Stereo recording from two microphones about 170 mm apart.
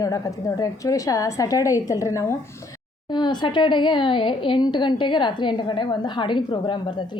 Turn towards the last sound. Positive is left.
turn(degrees=25)  # may be behind; listen again after turning